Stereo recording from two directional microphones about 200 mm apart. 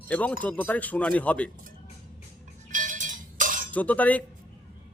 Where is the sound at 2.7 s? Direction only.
40° right (ahead or behind).